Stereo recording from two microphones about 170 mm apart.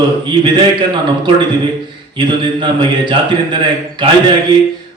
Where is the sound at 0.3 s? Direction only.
25° right (ahead or behind).